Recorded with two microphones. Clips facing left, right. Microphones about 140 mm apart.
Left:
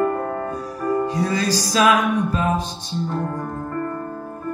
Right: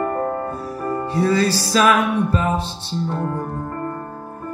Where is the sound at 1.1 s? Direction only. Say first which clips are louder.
Right 3 dB; 15° left (ahead or behind).